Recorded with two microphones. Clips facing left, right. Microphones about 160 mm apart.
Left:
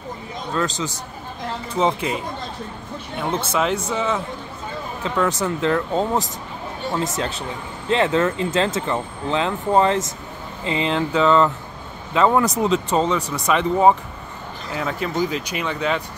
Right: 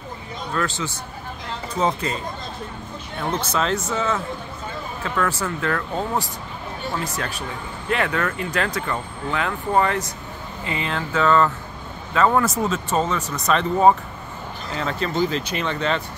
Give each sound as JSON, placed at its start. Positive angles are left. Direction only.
{"t": 0.6, "sound": "speech", "side_deg": 25}
{"t": 1.8, "sound": "speech", "side_deg": 15}
{"t": 3.5, "sound": "speech", "side_deg": 10}